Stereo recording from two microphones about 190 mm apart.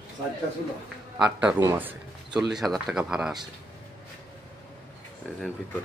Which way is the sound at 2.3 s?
Centre (ahead or behind).